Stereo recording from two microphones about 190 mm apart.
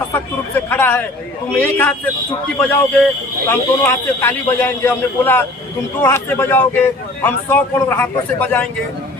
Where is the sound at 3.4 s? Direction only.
10° left (ahead or behind).